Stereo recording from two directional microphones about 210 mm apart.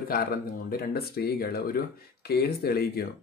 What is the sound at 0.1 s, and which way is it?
Speech, 45° left (ahead or behind).